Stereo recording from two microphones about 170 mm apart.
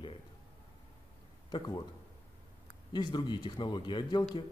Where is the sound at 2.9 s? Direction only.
25° left (ahead or behind).